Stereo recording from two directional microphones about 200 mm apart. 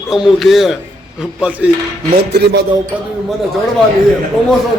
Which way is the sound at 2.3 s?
55° right (ahead or behind).